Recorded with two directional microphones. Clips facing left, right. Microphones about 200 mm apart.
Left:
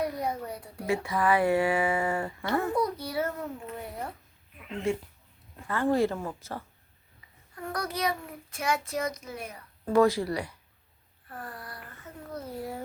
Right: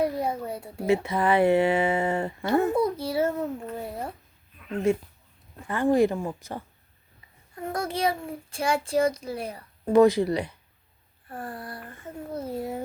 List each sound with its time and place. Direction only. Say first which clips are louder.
0.0 s speech: right 4 dB; 25° right (ahead or behind)
5.6 s a child's voice: right 4 dB; 15° right (ahead or behind)
9.8 s speech: right 5 dB; 20° right (ahead or behind)